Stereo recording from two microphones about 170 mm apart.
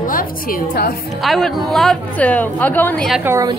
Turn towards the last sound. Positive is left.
turn(degrees=-15)  # may be behind; listen again after turning